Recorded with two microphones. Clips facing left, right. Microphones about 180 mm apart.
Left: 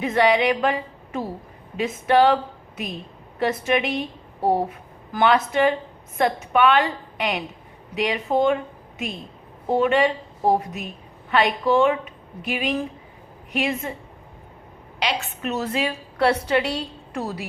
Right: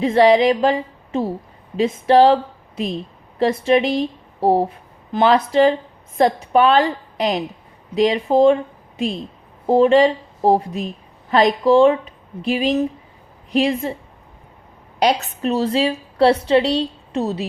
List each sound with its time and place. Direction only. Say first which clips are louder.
0.0 s a woman's voice: right 6 dB; 30° right (ahead or behind)
9.6 s a woman's voice: right 6 dB; 30° right (ahead or behind)
14.9 s a woman's voice: right 9 dB; 40° right (ahead or behind); by 17.4 s 25° right (ahead or behind)